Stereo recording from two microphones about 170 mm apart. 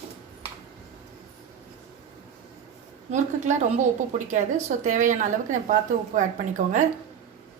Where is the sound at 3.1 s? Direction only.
45° right (ahead or behind).